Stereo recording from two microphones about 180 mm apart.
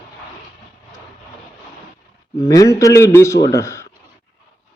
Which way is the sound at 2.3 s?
20° left (ahead or behind).